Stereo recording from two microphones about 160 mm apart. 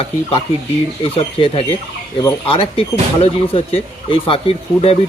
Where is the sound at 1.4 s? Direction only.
35° left (ahead or behind).